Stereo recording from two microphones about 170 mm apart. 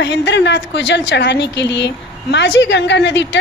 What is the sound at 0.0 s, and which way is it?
A woman's voice, 90° left.